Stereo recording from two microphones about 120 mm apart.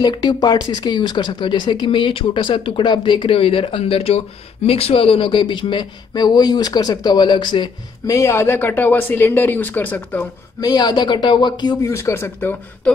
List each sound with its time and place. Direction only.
0.0 s speech: 40° left (ahead or behind)
8.1 s speech: 25° left (ahead or behind)
10.6 s speech: 35° left (ahead or behind)
11.9 s speech: 20° left (ahead or behind)